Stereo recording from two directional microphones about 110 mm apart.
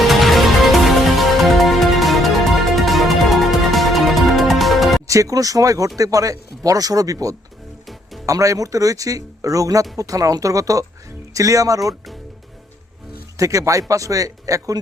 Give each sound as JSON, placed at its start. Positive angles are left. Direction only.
{"t": 0.1, "sound": "music", "side_deg": 0}
{"t": 5.0, "sound": "speech", "side_deg": -30}
{"t": 13.3, "sound": "speech", "side_deg": -30}